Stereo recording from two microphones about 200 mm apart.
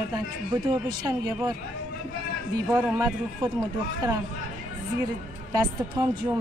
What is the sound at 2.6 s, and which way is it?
Speech, 10° right (ahead or behind).